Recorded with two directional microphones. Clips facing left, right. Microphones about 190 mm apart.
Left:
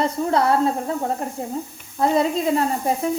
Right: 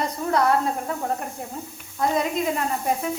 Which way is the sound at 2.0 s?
30° left (ahead or behind).